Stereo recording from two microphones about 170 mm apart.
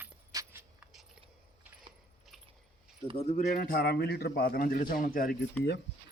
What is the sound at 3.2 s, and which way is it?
A man's voice, 35° left (ahead or behind).